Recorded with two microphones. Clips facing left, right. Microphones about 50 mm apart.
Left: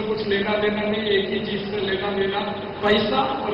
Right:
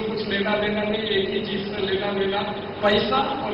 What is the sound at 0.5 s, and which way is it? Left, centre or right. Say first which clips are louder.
A man's voice: left 1 dB; centre.